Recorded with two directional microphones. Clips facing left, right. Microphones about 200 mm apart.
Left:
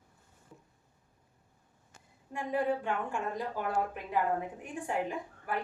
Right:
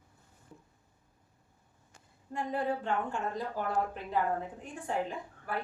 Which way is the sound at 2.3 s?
10° left (ahead or behind).